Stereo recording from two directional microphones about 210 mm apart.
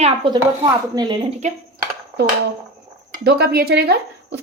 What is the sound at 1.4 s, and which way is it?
Speech, 35° right (ahead or behind).